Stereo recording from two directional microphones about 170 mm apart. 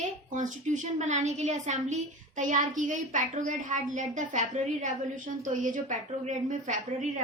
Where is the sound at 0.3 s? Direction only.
45° right (ahead or behind).